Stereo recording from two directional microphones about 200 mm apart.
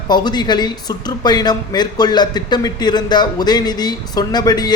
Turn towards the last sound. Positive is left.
turn(degrees=20)  # may be behind; listen again after turning